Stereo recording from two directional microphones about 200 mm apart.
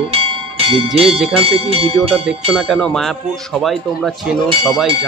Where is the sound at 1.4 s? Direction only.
30° right (ahead or behind).